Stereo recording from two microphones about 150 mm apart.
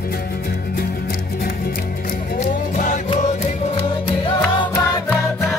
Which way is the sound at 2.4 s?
55° left (ahead or behind).